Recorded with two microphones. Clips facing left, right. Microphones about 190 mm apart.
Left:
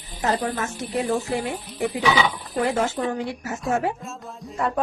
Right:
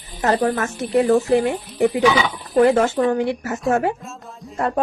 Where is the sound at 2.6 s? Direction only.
55° right (ahead or behind).